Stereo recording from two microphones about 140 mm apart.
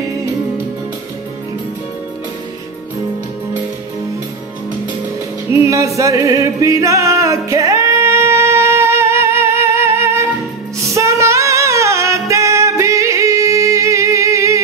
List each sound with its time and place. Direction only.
5.5 s music: 20° right (ahead or behind)